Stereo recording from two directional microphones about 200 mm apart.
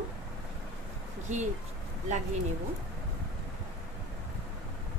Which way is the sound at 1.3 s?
35° right (ahead or behind).